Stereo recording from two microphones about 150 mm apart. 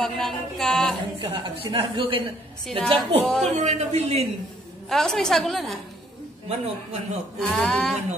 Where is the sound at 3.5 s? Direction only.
45° right (ahead or behind).